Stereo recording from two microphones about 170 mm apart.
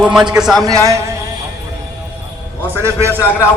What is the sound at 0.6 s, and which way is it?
Speech, 20° right (ahead or behind).